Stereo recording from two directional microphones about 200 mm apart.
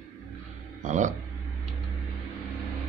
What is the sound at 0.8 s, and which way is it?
Speech, 35° right (ahead or behind).